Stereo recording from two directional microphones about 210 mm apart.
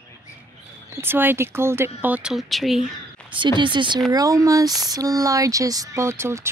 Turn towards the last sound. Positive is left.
turn(degrees=-10)  # may be behind; listen again after turning